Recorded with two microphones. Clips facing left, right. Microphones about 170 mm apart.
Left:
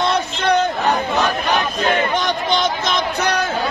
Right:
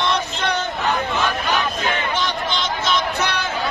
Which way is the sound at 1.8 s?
40° left (ahead or behind).